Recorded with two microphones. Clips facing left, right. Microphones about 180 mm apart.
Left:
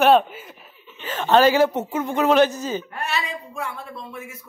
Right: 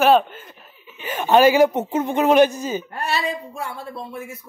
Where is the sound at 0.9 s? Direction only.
10° right (ahead or behind).